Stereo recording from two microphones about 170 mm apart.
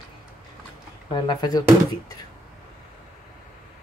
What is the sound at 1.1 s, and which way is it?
Speech, 25° left (ahead or behind).